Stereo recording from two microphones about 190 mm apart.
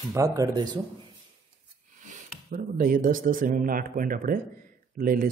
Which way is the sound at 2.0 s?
45° right (ahead or behind).